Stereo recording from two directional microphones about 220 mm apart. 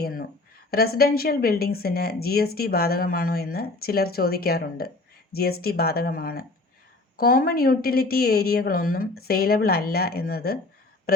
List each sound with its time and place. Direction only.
0.0 s speech: 40° left (ahead or behind)